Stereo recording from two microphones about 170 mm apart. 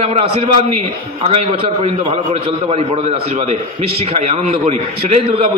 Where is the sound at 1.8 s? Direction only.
35° right (ahead or behind).